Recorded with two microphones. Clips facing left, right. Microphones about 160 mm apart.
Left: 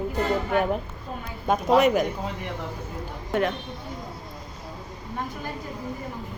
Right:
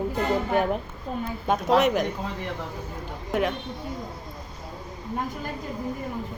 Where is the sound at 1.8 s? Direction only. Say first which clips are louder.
Left 3 dB; centre (ahead or behind).